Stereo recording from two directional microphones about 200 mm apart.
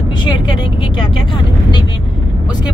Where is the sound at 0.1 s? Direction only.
25° left (ahead or behind).